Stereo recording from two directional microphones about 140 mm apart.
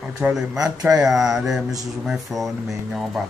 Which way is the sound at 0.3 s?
5° right (ahead or behind).